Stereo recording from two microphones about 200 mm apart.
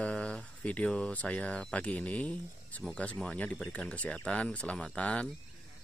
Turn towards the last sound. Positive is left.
turn(degrees=5)  # may be behind; listen again after turning